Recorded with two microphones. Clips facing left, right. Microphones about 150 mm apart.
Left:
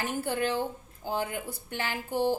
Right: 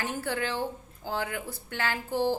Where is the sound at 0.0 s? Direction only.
15° left (ahead or behind).